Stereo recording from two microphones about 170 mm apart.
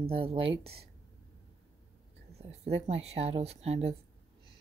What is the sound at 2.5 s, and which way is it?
Speech, 40° right (ahead or behind).